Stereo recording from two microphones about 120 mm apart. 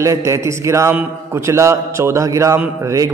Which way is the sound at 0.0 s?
25° right (ahead or behind).